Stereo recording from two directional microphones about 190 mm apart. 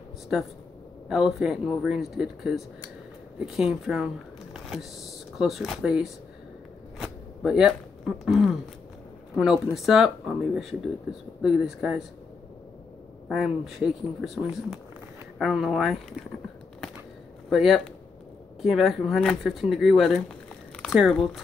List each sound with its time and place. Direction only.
1.0 s speech: centre (ahead or behind)
7.0 s a sound: 5° right (ahead or behind)
9.3 s speech: centre (ahead or behind)
13.3 s speech: centre (ahead or behind)
17.5 s speech: centre (ahead or behind)